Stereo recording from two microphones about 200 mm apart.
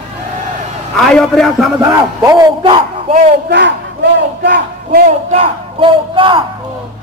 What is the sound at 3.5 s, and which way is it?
Battle cry, 60° right (ahead or behind).